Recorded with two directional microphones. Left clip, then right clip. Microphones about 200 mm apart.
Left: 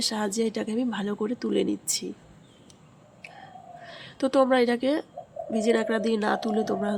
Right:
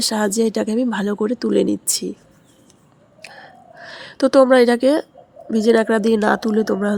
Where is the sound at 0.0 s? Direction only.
45° right (ahead or behind).